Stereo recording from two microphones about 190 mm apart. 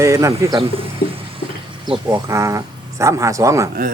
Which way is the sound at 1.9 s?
20° right (ahead or behind).